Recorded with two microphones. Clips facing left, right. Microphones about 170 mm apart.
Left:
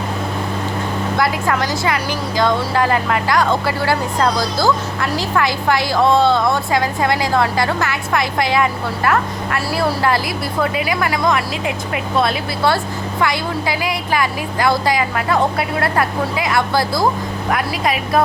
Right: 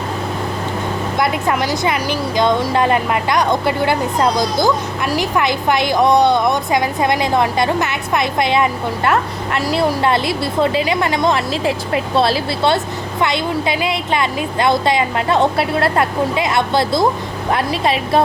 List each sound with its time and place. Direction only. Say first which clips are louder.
1.2 s speech: right 2 dB; 20° right (ahead or behind)